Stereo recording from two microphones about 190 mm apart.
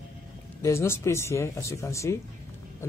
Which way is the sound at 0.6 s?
15° left (ahead or behind).